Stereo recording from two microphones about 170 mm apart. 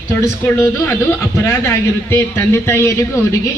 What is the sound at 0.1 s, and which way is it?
A man's voice, 15° left (ahead or behind).